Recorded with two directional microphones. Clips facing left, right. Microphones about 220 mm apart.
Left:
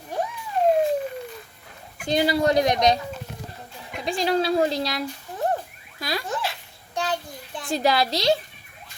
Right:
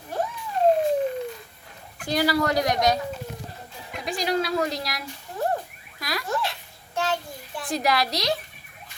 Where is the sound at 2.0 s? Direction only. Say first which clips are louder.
Left 2 dB; 25° left (ahead or behind).